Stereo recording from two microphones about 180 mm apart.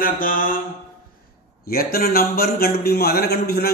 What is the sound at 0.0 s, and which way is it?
Speech, 50° left (ahead or behind).